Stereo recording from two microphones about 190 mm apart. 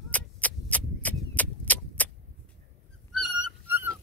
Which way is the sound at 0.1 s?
10° left (ahead or behind).